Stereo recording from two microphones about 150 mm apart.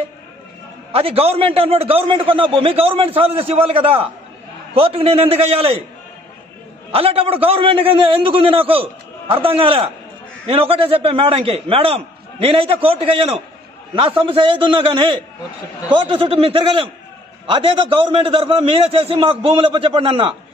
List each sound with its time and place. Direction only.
0.9 s a man's voice: 40° right (ahead or behind)
6.9 s a man's voice: 40° right (ahead or behind)